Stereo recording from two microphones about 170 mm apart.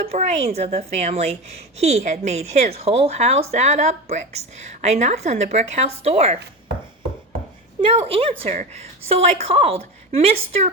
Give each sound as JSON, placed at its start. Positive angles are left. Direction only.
{"t": 0.1, "sound": "a woman's voice", "side_deg": -40}
{"t": 7.9, "sound": "a woman's voice", "side_deg": -35}